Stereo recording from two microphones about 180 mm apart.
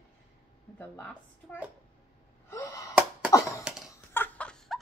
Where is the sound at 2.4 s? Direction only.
15° left (ahead or behind).